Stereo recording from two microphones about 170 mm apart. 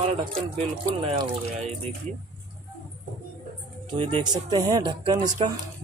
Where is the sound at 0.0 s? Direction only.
35° right (ahead or behind).